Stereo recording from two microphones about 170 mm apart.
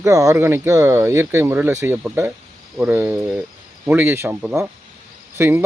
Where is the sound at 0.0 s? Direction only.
20° right (ahead or behind).